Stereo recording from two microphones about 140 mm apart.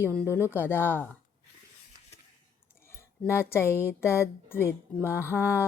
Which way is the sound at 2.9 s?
20° left (ahead or behind).